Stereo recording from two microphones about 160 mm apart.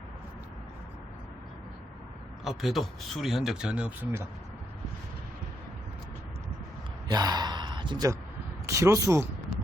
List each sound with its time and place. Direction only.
2.4 s speech: centre (ahead or behind)
7.1 s gasp: 25° right (ahead or behind)
8.6 s speech: 20° right (ahead or behind)